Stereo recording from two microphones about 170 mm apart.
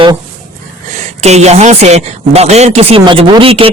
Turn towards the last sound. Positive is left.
turn(degrees=-35)  # may be behind; listen again after turning